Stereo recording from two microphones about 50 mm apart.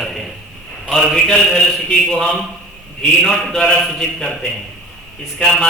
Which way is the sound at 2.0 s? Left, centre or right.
Centre.